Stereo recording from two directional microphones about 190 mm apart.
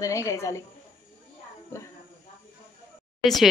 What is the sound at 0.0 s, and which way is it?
Speech, 15° left (ahead or behind).